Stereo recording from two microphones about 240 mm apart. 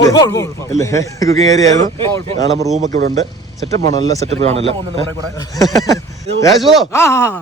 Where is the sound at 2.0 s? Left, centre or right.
Right.